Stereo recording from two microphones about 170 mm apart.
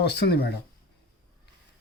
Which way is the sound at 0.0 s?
75° left (ahead or behind).